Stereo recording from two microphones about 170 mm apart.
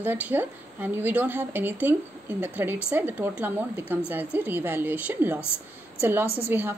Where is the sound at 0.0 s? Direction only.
10° right (ahead or behind).